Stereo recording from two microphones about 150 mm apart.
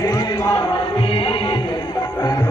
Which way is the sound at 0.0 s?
25° left (ahead or behind).